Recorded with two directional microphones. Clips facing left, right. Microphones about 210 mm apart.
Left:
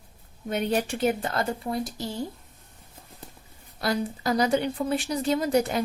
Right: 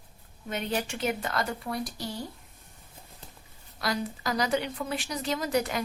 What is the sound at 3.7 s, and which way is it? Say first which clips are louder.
Speech: left 4 dB; 30° left (ahead or behind).